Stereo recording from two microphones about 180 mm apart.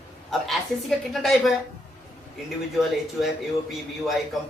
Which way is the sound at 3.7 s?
Centre (ahead or behind).